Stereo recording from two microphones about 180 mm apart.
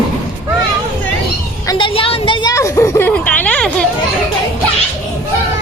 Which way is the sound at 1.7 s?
30° left (ahead or behind).